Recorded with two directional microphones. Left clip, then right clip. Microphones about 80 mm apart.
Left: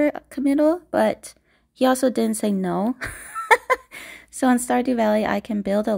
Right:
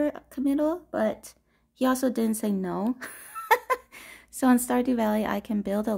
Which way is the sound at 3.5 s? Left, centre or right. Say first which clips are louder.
Left 6 dB; left.